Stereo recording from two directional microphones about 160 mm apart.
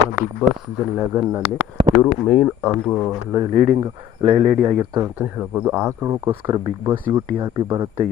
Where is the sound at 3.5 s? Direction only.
40° right (ahead or behind).